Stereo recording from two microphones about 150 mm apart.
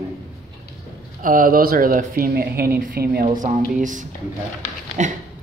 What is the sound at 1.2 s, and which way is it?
Speech, 65° right (ahead or behind).